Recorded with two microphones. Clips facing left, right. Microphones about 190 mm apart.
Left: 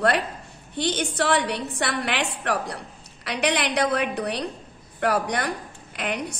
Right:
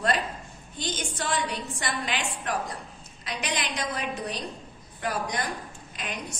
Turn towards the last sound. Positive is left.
turn(degrees=65)  # may be behind; listen again after turning